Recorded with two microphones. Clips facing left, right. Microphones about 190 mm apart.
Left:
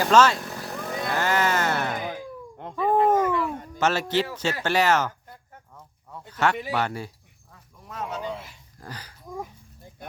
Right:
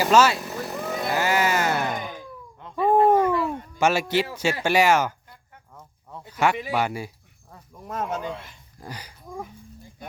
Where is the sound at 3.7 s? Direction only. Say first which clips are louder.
Right 2 dB; 10° right (ahead or behind).